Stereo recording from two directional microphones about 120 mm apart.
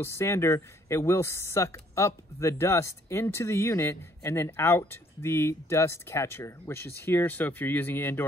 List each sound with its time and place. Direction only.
0.0 s speech: 20° left (ahead or behind)